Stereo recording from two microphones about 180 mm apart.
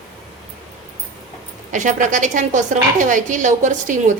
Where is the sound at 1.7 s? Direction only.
45° right (ahead or behind).